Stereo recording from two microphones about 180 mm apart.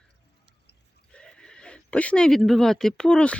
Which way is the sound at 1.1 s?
5° left (ahead or behind).